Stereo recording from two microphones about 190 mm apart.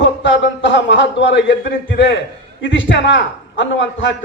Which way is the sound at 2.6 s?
80° left.